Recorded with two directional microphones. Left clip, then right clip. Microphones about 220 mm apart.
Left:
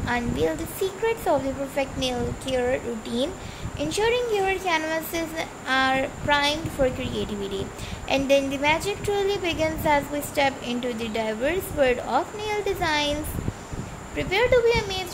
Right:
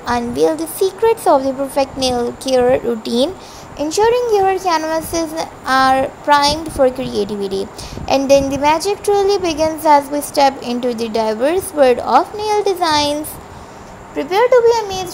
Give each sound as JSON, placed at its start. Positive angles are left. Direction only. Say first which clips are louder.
{"t": 0.0, "sound": "a woman's voice", "louder": "right 10 dB", "side_deg": -25}